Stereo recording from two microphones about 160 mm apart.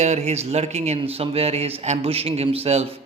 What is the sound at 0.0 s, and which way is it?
A man's voice, 45° right (ahead or behind).